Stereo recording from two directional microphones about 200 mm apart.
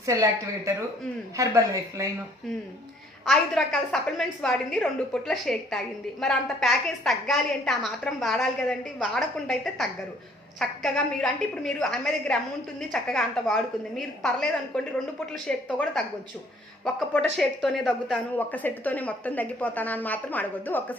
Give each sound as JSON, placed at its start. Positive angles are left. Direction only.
{"t": 0.0, "sound": "speech", "side_deg": -15}
{"t": 3.2, "sound": "a woman's voice", "side_deg": 5}
{"t": 15.4, "sound": "a woman's voice", "side_deg": 5}
{"t": 17.3, "sound": "speech", "side_deg": 0}